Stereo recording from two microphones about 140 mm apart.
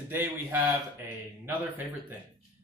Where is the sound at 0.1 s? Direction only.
15° right (ahead or behind).